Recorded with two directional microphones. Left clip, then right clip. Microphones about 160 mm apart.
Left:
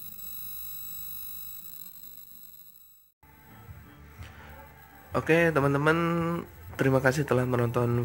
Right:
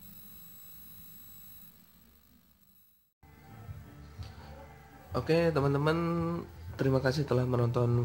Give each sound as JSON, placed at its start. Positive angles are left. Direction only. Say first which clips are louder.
{"t": 5.1, "sound": "speech", "louder": "left 5 dB", "side_deg": 15}
{"t": 6.7, "sound": "speech", "louder": "left 5 dB", "side_deg": 20}
{"t": 7.2, "sound": "a man's voice", "louder": "left 4 dB", "side_deg": 5}